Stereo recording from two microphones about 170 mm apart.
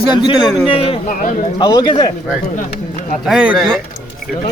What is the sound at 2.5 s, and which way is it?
Speech, 45° left (ahead or behind).